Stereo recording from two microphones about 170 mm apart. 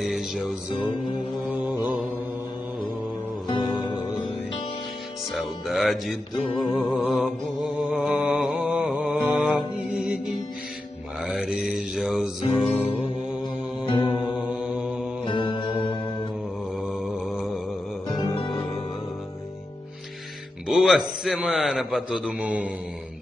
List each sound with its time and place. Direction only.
0.0 s music: centre (ahead or behind)
3.4 s music: 30° left (ahead or behind)
5.3 s speech: centre (ahead or behind)
7.2 s mantra: centre (ahead or behind)
11.2 s music: centre (ahead or behind)
15.2 s mantra: 30° left (ahead or behind)
16.8 s mantra: centre (ahead or behind)
18.0 s music: 30° left (ahead or behind)
20.6 s a man's voice: centre (ahead or behind)